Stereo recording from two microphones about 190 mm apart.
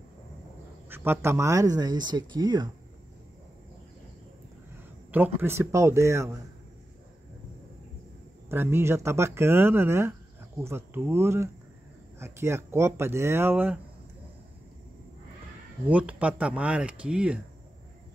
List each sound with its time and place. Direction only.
0.8 s speech: 10° right (ahead or behind)
5.4 s speech: 15° right (ahead or behind)
8.5 s speech: 15° right (ahead or behind)
15.9 s speech: 5° right (ahead or behind)